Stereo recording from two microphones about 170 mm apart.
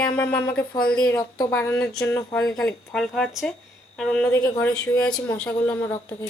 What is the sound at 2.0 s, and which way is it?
Speech, 15° left (ahead or behind).